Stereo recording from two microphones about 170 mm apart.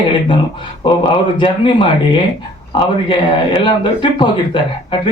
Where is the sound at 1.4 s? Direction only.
30° left (ahead or behind).